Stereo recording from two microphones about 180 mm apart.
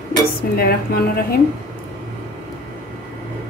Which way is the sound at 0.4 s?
55° left (ahead or behind).